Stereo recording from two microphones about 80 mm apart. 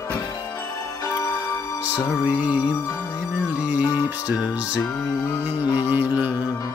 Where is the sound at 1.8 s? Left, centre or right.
Centre.